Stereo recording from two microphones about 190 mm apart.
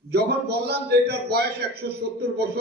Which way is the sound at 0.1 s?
55° right (ahead or behind).